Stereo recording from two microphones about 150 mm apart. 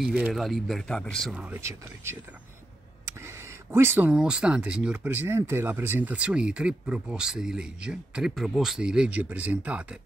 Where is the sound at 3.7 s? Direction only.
15° right (ahead or behind).